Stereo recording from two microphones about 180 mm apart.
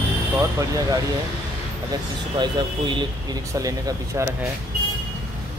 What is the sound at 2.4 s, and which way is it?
Speech, 25° right (ahead or behind).